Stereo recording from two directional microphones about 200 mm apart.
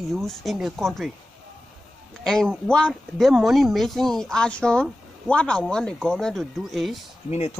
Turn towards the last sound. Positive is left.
turn(degrees=30)  # may be behind; listen again after turning